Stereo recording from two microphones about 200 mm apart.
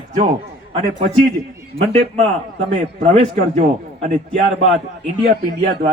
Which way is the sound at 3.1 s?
40° right (ahead or behind).